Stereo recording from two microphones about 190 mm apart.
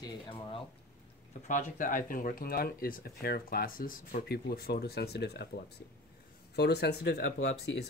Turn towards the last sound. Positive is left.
turn(degrees=65)  # may be behind; listen again after turning